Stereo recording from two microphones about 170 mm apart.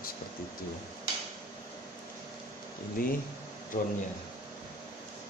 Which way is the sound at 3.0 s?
60° left (ahead or behind).